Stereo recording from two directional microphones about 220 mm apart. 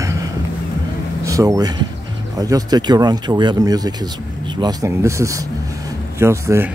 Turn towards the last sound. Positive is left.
turn(degrees=-10)  # may be behind; listen again after turning